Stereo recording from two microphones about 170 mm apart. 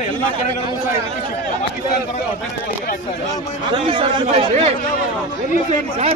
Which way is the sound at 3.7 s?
30° right (ahead or behind).